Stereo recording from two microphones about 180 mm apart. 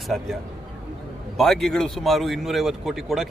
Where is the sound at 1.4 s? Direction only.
Centre (ahead or behind).